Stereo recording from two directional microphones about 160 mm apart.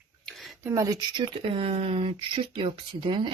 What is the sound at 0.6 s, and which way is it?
Speech, 20° right (ahead or behind).